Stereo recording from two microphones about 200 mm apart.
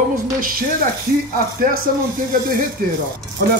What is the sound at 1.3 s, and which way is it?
Speech, 45° right (ahead or behind).